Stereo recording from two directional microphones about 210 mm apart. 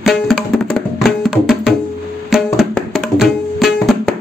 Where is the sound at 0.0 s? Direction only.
Centre (ahead or behind).